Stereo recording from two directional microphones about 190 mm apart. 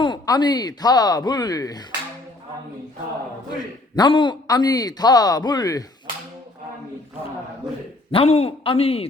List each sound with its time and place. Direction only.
0.0 s speech: 25° left (ahead or behind)
3.9 s speech: 25° left (ahead or behind)
8.1 s speech: 30° left (ahead or behind)